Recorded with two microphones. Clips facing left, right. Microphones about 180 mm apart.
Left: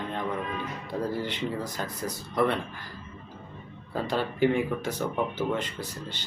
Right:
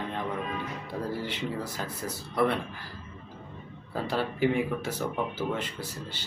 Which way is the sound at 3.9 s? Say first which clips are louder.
Left 1 dB; 5° right (ahead or behind).